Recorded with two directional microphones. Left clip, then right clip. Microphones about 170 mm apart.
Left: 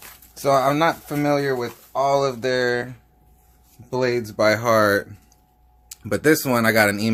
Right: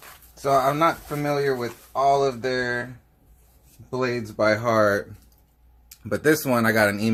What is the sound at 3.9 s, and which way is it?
Speech, 75° left (ahead or behind).